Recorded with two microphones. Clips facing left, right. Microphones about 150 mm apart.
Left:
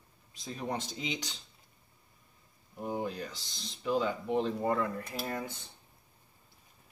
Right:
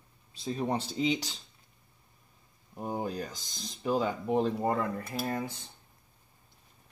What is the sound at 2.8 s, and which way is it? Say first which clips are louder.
Speech: right 1 dB; 40° right (ahead or behind).